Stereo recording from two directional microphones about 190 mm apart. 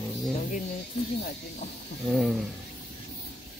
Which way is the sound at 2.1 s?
Centre (ahead or behind).